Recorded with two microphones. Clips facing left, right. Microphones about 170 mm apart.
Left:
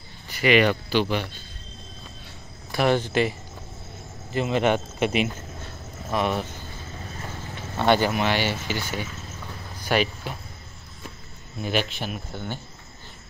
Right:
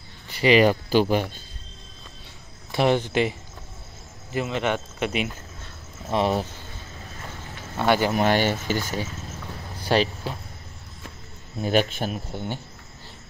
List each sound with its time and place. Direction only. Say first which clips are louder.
0.4 s speech: right 2 dB; 35° right (ahead or behind)
2.7 s speech: right 1 dB; 20° right (ahead or behind)
4.5 s speech: left 6 dB; 5° left (ahead or behind)
6.0 s speech: right 2 dB; 30° right (ahead or behind)
7.8 s speech: left 1 dB; 5° right (ahead or behind)
8.1 s speech: right 3 dB; 45° right (ahead or behind)
9.8 s a sound: right 2 dB; 30° right (ahead or behind)
11.6 s speech: right 4 dB; 45° right (ahead or behind)
12.3 s speech: right 2 dB; 25° right (ahead or behind)